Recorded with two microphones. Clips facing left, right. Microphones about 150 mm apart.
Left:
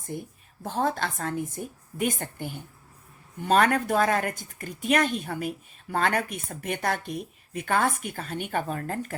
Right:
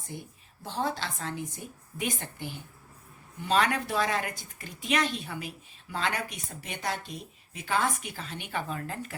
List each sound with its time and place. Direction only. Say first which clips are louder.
0.6 s speech: left 5 dB; 50° left (ahead or behind)